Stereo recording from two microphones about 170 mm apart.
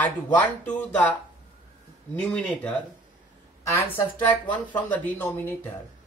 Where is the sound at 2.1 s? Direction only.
5° left (ahead or behind).